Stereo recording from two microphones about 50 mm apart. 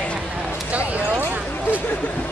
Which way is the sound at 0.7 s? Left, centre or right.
Right.